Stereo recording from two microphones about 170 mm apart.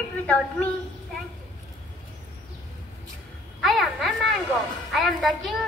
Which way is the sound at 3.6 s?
Centre (ahead or behind).